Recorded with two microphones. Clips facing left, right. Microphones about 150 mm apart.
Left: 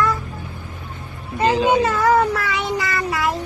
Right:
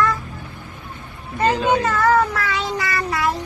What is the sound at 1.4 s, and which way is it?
Speech, 10° left (ahead or behind).